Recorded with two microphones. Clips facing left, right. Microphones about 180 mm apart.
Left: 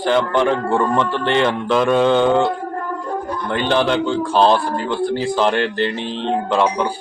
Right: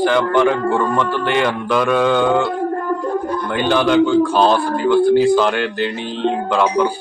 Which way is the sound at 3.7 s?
30° left (ahead or behind).